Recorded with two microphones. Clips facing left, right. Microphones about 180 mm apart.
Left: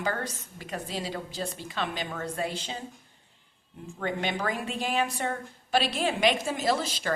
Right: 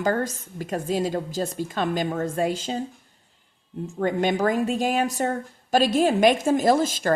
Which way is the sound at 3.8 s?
45° right (ahead or behind).